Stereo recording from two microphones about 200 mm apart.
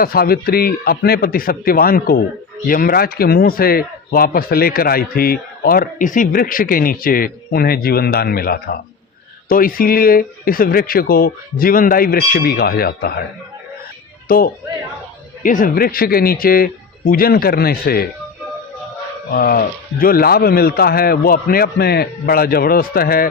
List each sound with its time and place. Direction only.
0.0 s speech: 50° left (ahead or behind)
14.3 s a man's voice: 45° left (ahead or behind)
19.3 s speech: 45° left (ahead or behind)